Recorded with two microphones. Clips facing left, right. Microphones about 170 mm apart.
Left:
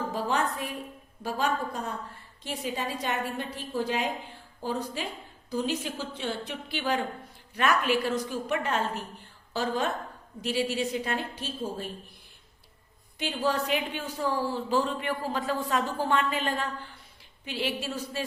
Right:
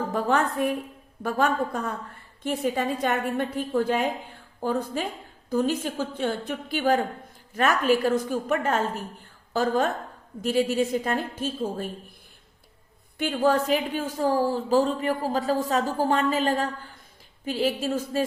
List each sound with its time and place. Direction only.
0.1 s a woman's voice: 55° right (ahead or behind)
13.1 s a woman's voice: 50° right (ahead or behind)